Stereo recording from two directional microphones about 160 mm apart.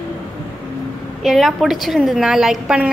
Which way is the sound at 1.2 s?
Centre (ahead or behind).